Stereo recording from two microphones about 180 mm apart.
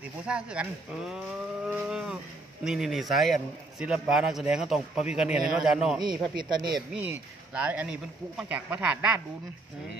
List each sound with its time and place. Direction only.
0.3 s moo: 5° right (ahead or behind)
5.9 s a man's voice: 25° right (ahead or behind)
6.9 s speech: 10° right (ahead or behind)